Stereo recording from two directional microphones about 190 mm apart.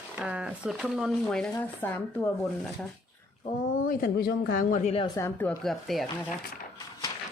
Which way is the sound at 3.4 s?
50° left (ahead or behind).